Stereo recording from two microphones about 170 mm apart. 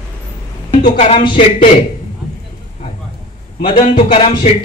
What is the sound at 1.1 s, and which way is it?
Speech, 30° left (ahead or behind).